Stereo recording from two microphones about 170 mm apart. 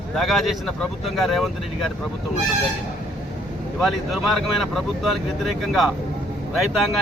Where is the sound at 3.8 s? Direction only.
Centre (ahead or behind).